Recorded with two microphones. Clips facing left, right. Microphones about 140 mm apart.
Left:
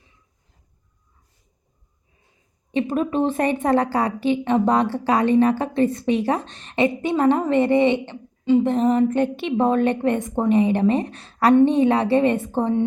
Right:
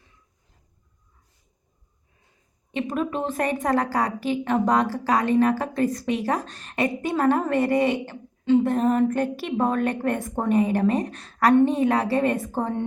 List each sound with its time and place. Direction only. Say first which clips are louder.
2.7 s a woman's voice: left 5 dB; 35° left (ahead or behind)